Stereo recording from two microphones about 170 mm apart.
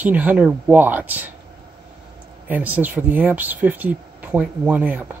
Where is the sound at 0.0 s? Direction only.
10° right (ahead or behind).